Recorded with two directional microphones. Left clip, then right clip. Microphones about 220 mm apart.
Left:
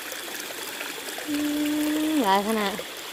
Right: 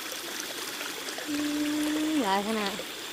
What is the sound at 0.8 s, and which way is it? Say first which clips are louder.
Water: left 2 dB; 10° left (ahead or behind).